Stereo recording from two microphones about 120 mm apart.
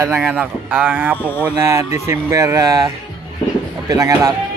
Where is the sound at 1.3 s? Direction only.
15° left (ahead or behind).